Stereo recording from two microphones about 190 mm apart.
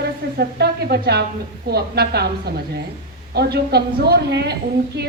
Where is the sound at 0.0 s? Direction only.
55° right (ahead or behind).